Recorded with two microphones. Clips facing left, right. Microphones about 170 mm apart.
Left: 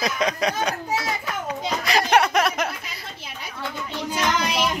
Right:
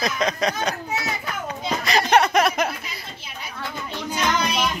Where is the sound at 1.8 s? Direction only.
10° left (ahead or behind).